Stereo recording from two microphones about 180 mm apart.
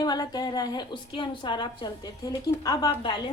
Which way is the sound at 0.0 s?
20° left (ahead or behind).